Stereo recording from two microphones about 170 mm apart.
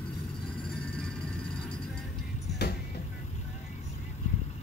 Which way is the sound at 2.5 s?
70° left (ahead or behind).